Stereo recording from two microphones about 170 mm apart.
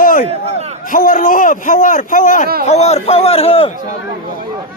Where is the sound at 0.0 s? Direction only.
55° left (ahead or behind).